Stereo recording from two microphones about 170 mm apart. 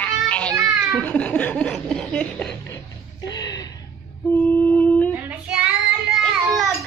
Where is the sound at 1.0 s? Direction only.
10° left (ahead or behind).